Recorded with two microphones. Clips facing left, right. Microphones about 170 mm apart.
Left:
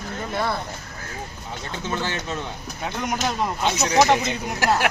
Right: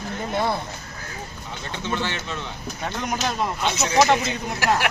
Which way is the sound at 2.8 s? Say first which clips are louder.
Left 1 dB; 10° left (ahead or behind).